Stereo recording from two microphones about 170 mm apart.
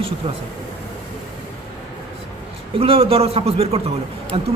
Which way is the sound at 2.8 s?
35° right (ahead or behind).